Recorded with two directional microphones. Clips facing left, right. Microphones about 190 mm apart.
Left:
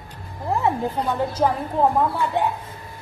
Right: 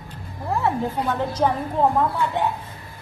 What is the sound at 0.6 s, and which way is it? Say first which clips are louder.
Speech: left 1 dB; 15° left (ahead or behind).